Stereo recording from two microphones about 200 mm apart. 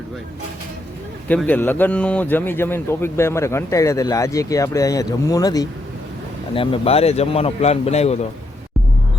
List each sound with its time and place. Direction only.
1.3 s speech: 10° left (ahead or behind); by 8.2 s 30° left (ahead or behind)